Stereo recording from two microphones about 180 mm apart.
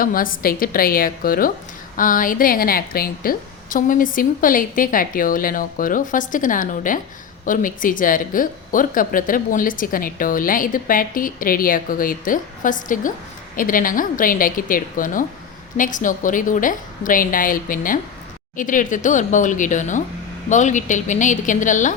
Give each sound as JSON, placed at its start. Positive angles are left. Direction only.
{"t": 0.0, "sound": "speech", "side_deg": 50}